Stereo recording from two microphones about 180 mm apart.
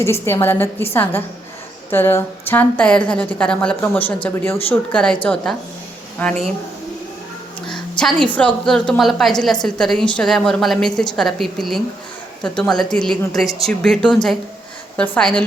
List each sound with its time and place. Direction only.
0.0 s a woman's voice: 15° left (ahead or behind)
1.9 s a woman's voice: 10° left (ahead or behind)
7.7 s a sound: 5° left (ahead or behind)
8.3 s a woman's voice: 5° left (ahead or behind)